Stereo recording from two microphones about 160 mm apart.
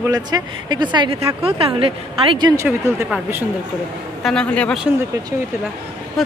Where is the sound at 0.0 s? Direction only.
25° right (ahead or behind).